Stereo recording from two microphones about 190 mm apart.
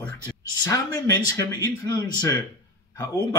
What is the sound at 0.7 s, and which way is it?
Speech, 20° left (ahead or behind).